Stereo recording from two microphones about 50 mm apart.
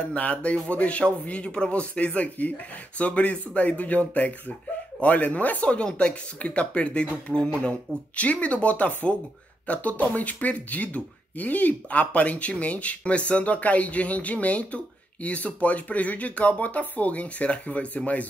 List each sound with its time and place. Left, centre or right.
0.1 s speech: left